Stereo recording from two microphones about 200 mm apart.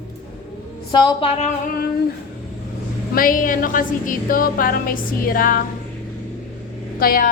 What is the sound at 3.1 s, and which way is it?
Music, 45° left (ahead or behind).